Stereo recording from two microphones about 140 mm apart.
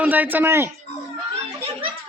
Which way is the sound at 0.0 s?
10° right (ahead or behind).